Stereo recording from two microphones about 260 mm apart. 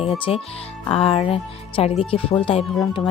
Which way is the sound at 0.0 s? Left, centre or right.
Left.